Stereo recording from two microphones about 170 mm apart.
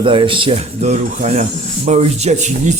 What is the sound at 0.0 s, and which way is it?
A man's voice, 30° right (ahead or behind).